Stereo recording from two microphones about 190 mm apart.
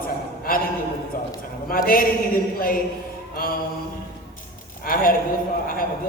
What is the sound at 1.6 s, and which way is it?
Speech, 50° left (ahead or behind).